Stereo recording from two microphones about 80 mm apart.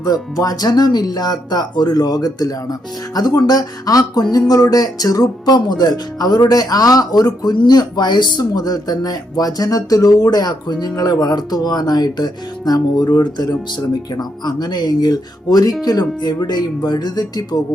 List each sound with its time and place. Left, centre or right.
0.0 s speech: left